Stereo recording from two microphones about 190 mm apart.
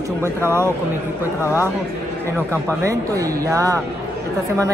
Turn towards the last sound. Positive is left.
turn(degrees=-15)  # may be behind; listen again after turning